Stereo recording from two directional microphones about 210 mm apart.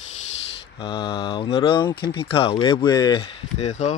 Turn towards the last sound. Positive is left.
turn(degrees=30)  # may be behind; listen again after turning